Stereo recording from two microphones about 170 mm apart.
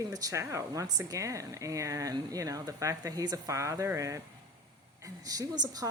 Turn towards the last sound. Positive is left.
turn(degrees=-20)  # may be behind; listen again after turning